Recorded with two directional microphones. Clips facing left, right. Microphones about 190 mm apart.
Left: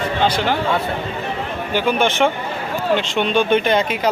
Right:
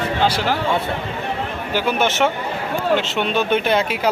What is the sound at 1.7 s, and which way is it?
Speech, 5° right (ahead or behind).